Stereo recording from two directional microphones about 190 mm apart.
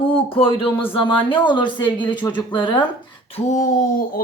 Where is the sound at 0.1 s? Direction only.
30° left (ahead or behind).